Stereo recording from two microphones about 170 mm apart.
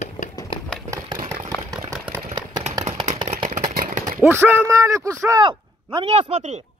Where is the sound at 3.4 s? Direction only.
50° right (ahead or behind).